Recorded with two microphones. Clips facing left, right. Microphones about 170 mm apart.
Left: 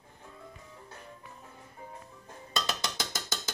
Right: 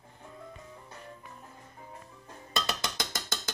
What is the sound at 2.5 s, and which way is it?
Music, centre (ahead or behind).